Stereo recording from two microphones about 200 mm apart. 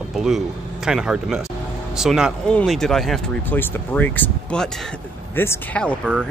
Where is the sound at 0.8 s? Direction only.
5° right (ahead or behind).